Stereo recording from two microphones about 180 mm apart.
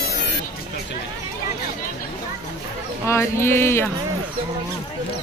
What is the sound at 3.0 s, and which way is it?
Speech, 15° left (ahead or behind).